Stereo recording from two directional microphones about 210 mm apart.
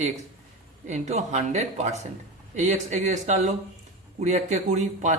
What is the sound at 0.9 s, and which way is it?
Speech, 35° right (ahead or behind).